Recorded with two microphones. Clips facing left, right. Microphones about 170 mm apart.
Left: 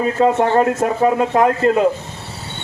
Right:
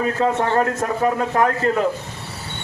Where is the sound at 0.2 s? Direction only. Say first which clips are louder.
Left 6 dB; 25° left (ahead or behind).